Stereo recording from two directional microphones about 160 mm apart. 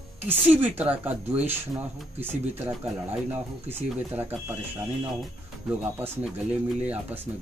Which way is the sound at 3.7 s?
45° right (ahead or behind).